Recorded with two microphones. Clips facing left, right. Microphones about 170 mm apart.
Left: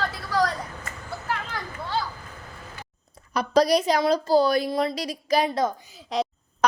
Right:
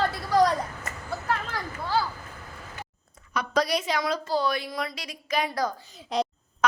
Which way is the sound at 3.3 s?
35° left (ahead or behind).